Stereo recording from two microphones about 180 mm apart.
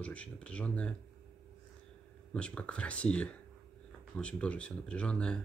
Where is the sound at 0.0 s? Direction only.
5° left (ahead or behind).